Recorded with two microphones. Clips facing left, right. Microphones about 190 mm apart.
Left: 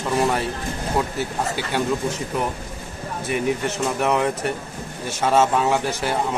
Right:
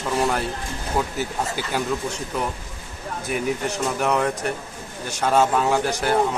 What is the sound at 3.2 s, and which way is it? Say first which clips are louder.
Speech: left 2 dB; centre (ahead or behind).